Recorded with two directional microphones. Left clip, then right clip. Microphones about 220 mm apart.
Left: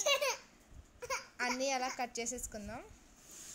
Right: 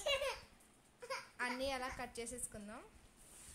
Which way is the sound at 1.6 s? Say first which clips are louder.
Left 6 dB; 15° left (ahead or behind).